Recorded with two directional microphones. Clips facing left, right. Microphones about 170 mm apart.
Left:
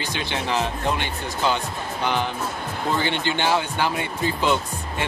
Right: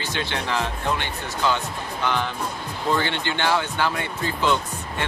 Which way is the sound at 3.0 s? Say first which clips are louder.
Left 1 dB; 15° left (ahead or behind).